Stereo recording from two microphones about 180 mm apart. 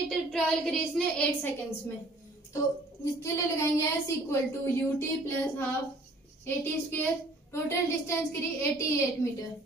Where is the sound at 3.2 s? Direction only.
15° left (ahead or behind).